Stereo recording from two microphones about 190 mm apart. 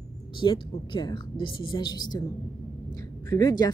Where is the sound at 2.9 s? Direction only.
20° left (ahead or behind).